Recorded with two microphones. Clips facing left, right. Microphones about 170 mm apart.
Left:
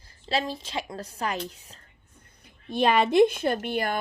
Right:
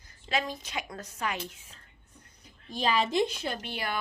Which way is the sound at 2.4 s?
60° left (ahead or behind).